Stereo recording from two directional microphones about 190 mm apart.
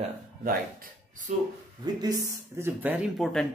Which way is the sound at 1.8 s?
20° right (ahead or behind).